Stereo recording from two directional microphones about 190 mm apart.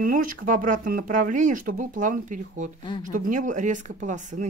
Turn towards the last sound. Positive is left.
turn(degrees=-40)  # may be behind; listen again after turning